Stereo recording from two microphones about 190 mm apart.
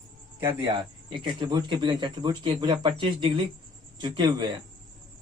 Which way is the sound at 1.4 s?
25° right (ahead or behind).